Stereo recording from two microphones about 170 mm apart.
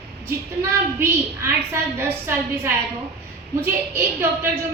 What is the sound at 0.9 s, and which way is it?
A woman's voice, 15° right (ahead or behind).